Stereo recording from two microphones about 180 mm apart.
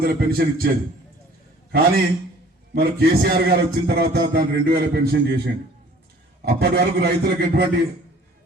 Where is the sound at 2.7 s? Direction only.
60° right (ahead or behind).